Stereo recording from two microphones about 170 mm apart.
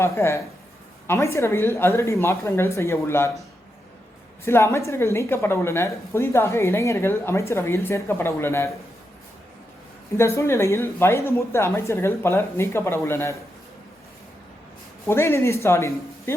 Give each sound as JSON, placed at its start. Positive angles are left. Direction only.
{"t": 0.0, "sound": "speech", "side_deg": 15}
{"t": 4.4, "sound": "speech", "side_deg": 15}
{"t": 10.2, "sound": "speech", "side_deg": 15}
{"t": 15.0, "sound": "speech", "side_deg": 15}